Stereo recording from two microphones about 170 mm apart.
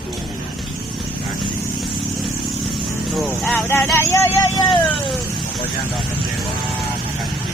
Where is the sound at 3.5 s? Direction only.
10° left (ahead or behind).